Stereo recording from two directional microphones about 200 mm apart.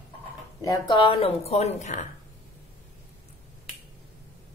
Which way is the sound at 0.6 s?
20° left (ahead or behind).